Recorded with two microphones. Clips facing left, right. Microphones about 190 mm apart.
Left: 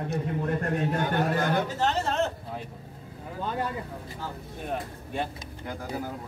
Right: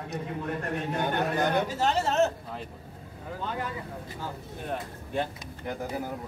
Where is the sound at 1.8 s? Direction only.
10° right (ahead or behind).